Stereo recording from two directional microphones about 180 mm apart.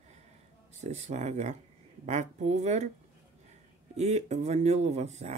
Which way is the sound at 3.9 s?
40° right (ahead or behind).